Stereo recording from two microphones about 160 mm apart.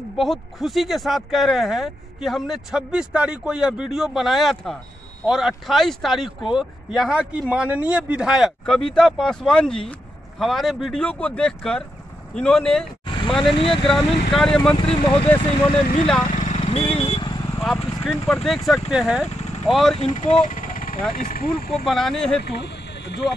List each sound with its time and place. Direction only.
0.2 s speech: centre (ahead or behind)
15.3 s speech: 35° left (ahead or behind)
16.3 s vehicle: 50° left (ahead or behind); by 17.4 s 30° left (ahead or behind)
17.6 s speech: centre (ahead or behind)
20.0 s speech: 45° left (ahead or behind)
21.8 s speech: centre (ahead or behind)
22.4 s a sound: 90° left